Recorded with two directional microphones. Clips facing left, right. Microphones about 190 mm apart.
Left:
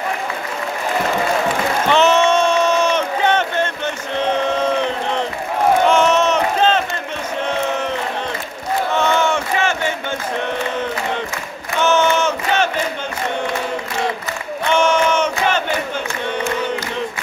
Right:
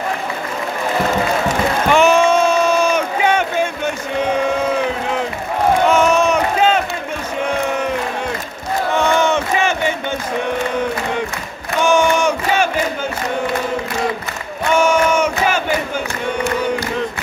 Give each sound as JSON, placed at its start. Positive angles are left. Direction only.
{"t": 1.9, "sound": "a sound", "side_deg": -10}
{"t": 5.9, "sound": "crowd", "side_deg": -10}
{"t": 8.9, "sound": "battle cry", "side_deg": -15}
{"t": 11.8, "sound": "battle cry", "side_deg": -10}
{"t": 14.7, "sound": "battle cry", "side_deg": -10}